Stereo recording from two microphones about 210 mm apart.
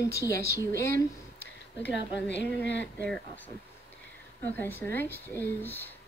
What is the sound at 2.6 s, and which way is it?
Speech, 55° left (ahead or behind).